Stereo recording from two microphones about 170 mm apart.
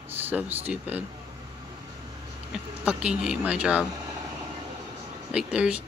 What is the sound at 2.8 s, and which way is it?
A woman's voice, 5° right (ahead or behind).